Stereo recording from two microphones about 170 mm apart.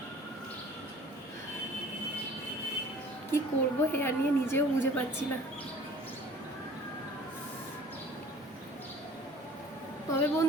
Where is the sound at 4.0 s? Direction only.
15° left (ahead or behind).